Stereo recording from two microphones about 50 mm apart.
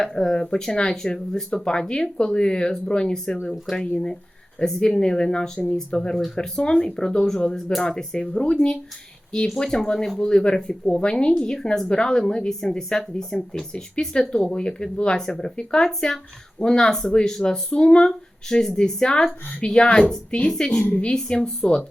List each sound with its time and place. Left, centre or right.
0.0 s speech: centre